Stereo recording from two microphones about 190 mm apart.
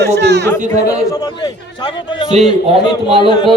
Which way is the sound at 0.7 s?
20° left (ahead or behind).